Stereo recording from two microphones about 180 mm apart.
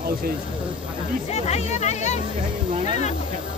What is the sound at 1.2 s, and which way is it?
Speech, 35° left (ahead or behind).